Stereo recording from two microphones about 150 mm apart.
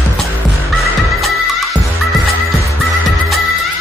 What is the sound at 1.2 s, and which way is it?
Music, centre (ahead or behind).